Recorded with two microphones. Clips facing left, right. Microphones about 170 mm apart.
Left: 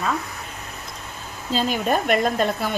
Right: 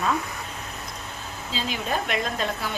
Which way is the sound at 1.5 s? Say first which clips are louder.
Left 7 dB; 50° left (ahead or behind).